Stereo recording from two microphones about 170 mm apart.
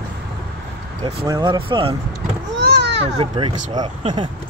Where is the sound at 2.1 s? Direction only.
75° right (ahead or behind).